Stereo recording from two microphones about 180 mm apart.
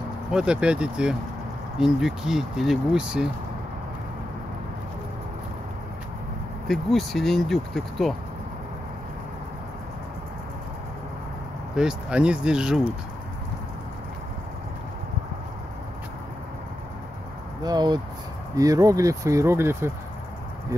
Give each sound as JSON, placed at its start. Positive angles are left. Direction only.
{"t": 0.3, "sound": "speech", "side_deg": -5}
{"t": 6.7, "sound": "speech", "side_deg": 0}
{"t": 11.7, "sound": "speech", "side_deg": -5}
{"t": 17.6, "sound": "speech", "side_deg": -25}